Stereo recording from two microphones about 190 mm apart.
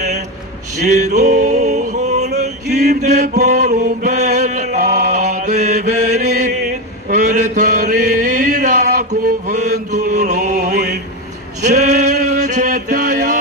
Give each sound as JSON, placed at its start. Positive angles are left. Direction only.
{"t": 0.8, "sound": "male singing", "side_deg": -40}
{"t": 2.4, "sound": "male singing", "side_deg": -55}
{"t": 3.0, "sound": "mantra", "side_deg": -40}
{"t": 11.6, "sound": "male singing", "side_deg": -40}
{"t": 12.4, "sound": "music", "side_deg": -40}